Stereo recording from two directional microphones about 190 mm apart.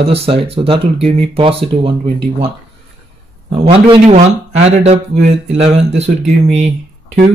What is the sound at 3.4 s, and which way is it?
Speech, 30° right (ahead or behind).